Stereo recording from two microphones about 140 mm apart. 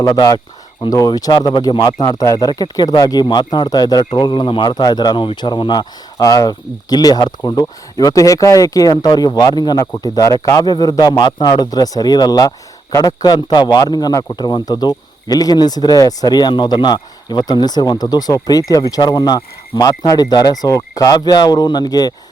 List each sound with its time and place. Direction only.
0.0 s speech: 25° left (ahead or behind)